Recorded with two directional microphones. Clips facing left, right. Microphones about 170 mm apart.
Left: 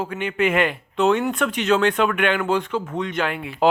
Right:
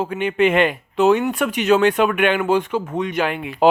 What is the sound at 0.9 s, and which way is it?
Speech, 15° right (ahead or behind).